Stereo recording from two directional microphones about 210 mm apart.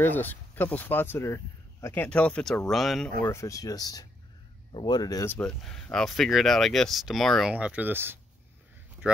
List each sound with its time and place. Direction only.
0.0 s speech: 10° left (ahead or behind)
3.2 s speech: 15° left (ahead or behind); by 8.2 s 10° right (ahead or behind)